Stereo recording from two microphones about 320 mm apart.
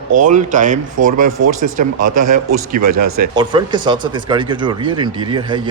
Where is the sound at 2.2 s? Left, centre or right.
Right.